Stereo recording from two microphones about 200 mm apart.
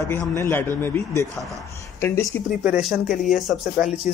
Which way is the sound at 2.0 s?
10° left (ahead or behind).